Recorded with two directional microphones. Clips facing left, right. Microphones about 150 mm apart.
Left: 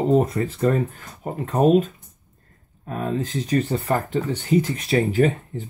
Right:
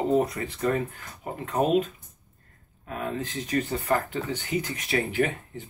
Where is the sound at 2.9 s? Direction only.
35° left (ahead or behind).